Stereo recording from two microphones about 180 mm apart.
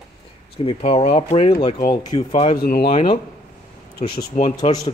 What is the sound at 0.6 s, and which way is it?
Speech, 35° left (ahead or behind).